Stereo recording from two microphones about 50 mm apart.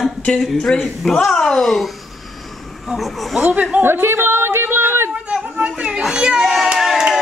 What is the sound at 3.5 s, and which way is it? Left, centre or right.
Speech, right.